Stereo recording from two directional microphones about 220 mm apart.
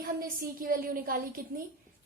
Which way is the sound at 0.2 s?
40° right (ahead or behind).